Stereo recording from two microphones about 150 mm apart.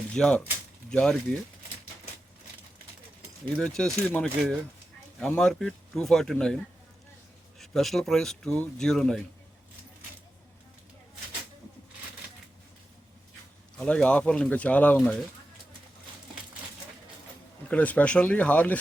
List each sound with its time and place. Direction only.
0.1 s speech: 5° left (ahead or behind)
3.6 s speech: 5° left (ahead or behind)
7.6 s speech: centre (ahead or behind)
13.7 s speech: 5° left (ahead or behind)
17.7 s speech: 10° left (ahead or behind)